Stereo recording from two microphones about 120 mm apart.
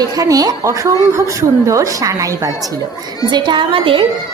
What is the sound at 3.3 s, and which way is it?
Speech, 40° right (ahead or behind).